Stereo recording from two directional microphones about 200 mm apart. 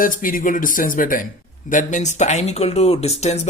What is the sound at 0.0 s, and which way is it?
Speech, 45° left (ahead or behind).